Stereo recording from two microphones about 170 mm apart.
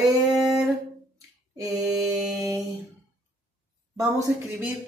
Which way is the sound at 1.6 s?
Centre (ahead or behind).